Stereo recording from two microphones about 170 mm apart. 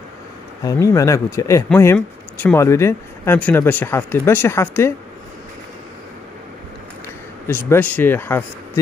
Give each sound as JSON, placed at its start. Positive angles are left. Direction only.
{"t": 0.7, "sound": "speech", "side_deg": 20}
{"t": 7.4, "sound": "speech", "side_deg": 10}